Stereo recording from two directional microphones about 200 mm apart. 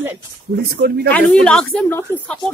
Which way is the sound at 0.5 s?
55° right (ahead or behind).